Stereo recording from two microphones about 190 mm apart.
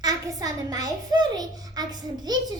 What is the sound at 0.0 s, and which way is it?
A child's voice, 20° right (ahead or behind).